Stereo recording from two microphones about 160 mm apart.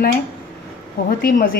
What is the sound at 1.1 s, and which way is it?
Speech, 65° left (ahead or behind).